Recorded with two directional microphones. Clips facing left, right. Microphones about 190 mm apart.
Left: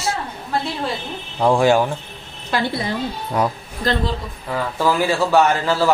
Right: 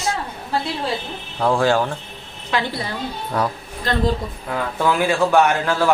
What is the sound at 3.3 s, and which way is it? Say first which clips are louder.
Speech: left 2 dB; 15° left (ahead or behind).